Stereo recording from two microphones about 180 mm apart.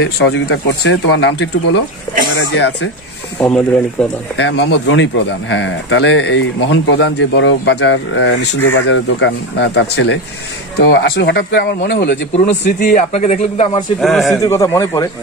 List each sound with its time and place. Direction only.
0.0 s speech: 85° left
2.5 s speech: 90° left
3.3 s a man's voice: 5° left (ahead or behind)
4.4 s speech: 80° left
12.4 s a man's voice: 45° left (ahead or behind)
14.0 s a man's voice: centre (ahead or behind)
14.4 s a man's voice: 15° left (ahead or behind)